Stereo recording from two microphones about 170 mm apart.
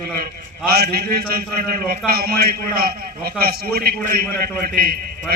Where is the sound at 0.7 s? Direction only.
65° right (ahead or behind).